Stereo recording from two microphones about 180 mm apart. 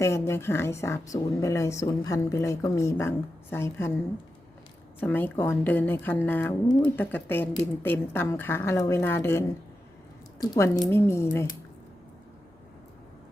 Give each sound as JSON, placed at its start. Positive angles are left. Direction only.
{"t": 0.0, "sound": "a woman's voice", "side_deg": 15}
{"t": 4.9, "sound": "a woman's voice", "side_deg": 10}
{"t": 10.4, "sound": "a woman's voice", "side_deg": 20}